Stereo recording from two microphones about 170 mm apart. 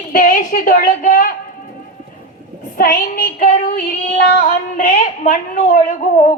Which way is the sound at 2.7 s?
55° left (ahead or behind).